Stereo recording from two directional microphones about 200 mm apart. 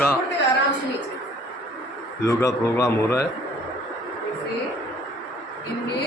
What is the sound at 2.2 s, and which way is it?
Speech, 15° left (ahead or behind).